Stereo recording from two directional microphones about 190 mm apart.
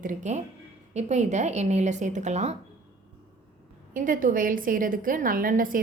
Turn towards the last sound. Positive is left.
turn(degrees=-45)  # may be behind; listen again after turning